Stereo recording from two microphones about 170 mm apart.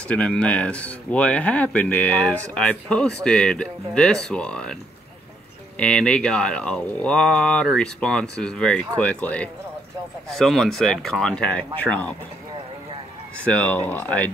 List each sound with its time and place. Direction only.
0.1 s speech: 5° left (ahead or behind)
5.8 s speech: 5° left (ahead or behind)
13.5 s speech: 10° left (ahead or behind)